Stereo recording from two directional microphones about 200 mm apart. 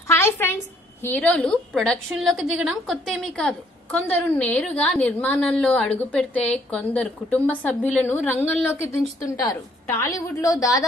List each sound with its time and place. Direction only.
0.1 s a woman's voice: 10° left (ahead or behind)